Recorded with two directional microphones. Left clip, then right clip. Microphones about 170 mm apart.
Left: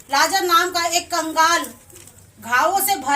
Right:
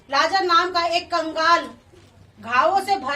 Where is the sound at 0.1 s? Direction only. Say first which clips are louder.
Left 1 dB; 15° right (ahead or behind).